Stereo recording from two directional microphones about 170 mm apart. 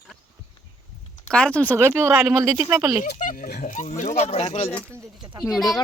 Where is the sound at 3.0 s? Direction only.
45° left (ahead or behind).